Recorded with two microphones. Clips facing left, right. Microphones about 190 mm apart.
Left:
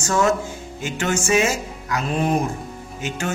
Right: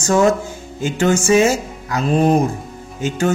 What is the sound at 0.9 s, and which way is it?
Speech, 35° right (ahead or behind).